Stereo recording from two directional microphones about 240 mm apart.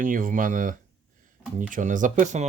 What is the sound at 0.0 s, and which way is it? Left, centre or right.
Speech, right.